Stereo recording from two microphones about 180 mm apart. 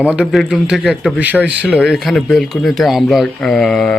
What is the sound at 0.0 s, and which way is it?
Speech, 5° right (ahead or behind).